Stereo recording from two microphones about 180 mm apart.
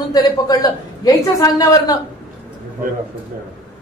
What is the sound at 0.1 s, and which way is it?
A woman's voice, 20° left (ahead or behind).